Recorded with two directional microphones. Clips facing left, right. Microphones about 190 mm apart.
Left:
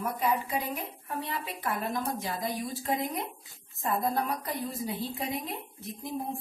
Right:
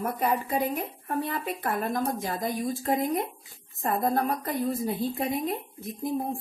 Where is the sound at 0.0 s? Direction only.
50° right (ahead or behind).